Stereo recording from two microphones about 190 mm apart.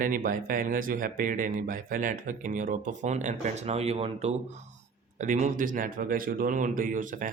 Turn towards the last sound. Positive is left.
turn(degrees=-45)  # may be behind; listen again after turning